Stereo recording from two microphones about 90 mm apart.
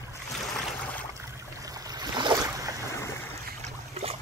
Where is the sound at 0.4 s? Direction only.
5° left (ahead or behind).